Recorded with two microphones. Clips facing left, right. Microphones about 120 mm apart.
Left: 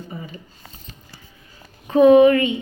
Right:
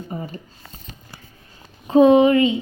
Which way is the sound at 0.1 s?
45° right (ahead or behind).